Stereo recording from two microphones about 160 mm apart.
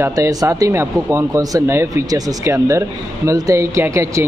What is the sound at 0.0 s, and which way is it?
Speech, 20° right (ahead or behind).